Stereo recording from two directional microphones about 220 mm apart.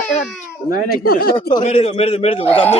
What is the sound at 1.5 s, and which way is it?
A man's voice, 25° left (ahead or behind).